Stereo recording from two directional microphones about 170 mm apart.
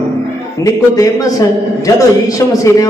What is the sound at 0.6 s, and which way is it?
Mantra, 20° left (ahead or behind).